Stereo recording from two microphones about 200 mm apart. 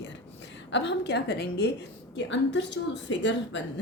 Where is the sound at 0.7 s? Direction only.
60° left (ahead or behind).